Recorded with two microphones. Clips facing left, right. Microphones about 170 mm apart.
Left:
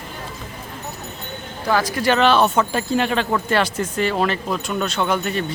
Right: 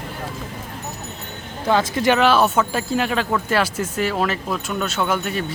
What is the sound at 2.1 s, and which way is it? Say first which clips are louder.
Speech: left 2 dB; 5° right (ahead or behind).